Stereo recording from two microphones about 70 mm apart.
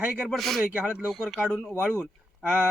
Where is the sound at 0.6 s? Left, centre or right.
Right.